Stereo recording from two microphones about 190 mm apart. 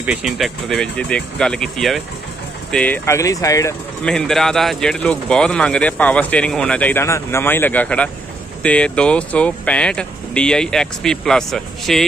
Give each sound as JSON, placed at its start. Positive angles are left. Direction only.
{"t": 0.0, "sound": "speech", "side_deg": -5}
{"t": 4.0, "sound": "speech", "side_deg": 5}